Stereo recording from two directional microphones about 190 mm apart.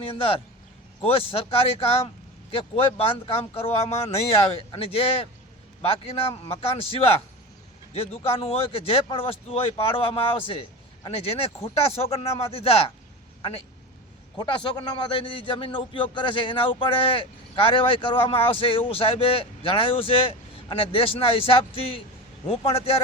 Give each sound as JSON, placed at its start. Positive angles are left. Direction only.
{"t": 0.0, "sound": "a man's voice", "side_deg": 30}
{"t": 14.3, "sound": "a man's voice", "side_deg": 25}